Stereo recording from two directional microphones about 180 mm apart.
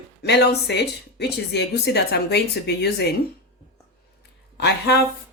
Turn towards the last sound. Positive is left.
turn(degrees=65)  # may be behind; listen again after turning